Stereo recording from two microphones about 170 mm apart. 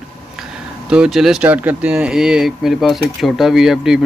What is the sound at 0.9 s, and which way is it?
Speech, 5° right (ahead or behind).